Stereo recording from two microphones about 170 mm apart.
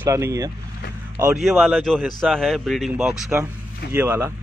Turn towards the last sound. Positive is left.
turn(degrees=-15)  # may be behind; listen again after turning